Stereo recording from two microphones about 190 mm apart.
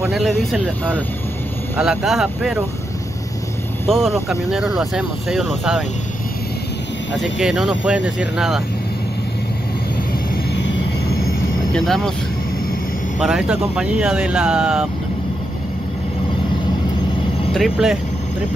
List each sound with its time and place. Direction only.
0.1 s speech: centre (ahead or behind)
4.0 s speech: centre (ahead or behind)
7.3 s speech: 5° right (ahead or behind)
10.3 s vehicle: 65° left (ahead or behind)
11.7 s speech: 5° left (ahead or behind)
13.2 s speech: 5° right (ahead or behind)
17.6 s speech: centre (ahead or behind)